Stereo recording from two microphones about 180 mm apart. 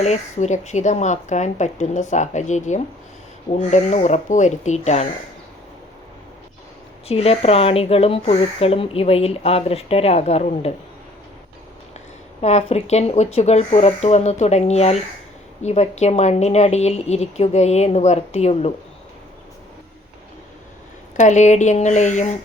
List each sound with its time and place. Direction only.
0.0 s speech: 40° left (ahead or behind)
7.1 s speech: 35° left (ahead or behind)
12.4 s speech: 35° left (ahead or behind)
21.2 s speech: 40° left (ahead or behind)